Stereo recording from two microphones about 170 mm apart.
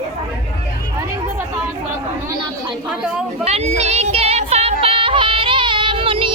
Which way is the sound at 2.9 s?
5° right (ahead or behind).